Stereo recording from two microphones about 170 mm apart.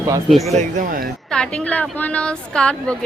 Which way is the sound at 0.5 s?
50° right (ahead or behind).